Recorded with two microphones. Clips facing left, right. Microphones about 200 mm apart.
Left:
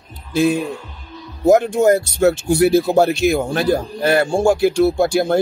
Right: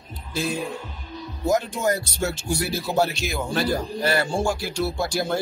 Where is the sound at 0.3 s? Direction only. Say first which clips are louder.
Left 10 dB; 55° left (ahead or behind).